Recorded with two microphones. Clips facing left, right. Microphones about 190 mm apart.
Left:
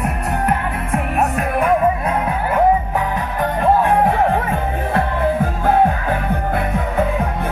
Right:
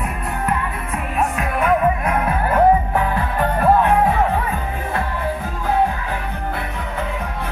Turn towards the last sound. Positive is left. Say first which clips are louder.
# left 7 dB
turn(degrees=50)  # may be behind; listen again after turning